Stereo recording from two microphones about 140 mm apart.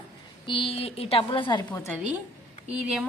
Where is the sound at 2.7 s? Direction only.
5° right (ahead or behind).